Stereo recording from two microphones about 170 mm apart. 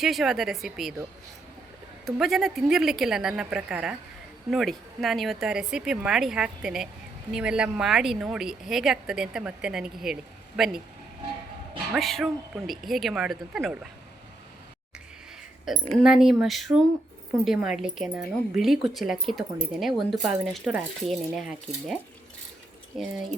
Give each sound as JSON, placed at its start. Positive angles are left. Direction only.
{"t": 0.0, "sound": "speech", "side_deg": 0}
{"t": 2.0, "sound": "speech", "side_deg": 0}
{"t": 11.9, "sound": "speech", "side_deg": 0}
{"t": 15.7, "sound": "speech", "side_deg": 0}
{"t": 22.9, "sound": "speech", "side_deg": 0}